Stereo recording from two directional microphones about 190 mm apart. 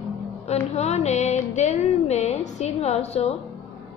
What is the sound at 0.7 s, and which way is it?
A woman's voice, 35° left (ahead or behind).